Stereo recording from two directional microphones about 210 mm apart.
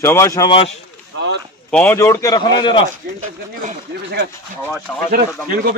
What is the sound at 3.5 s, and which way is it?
Speech, 35° right (ahead or behind).